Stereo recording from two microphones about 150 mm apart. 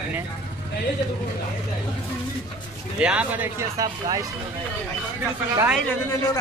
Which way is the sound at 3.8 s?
25° right (ahead or behind).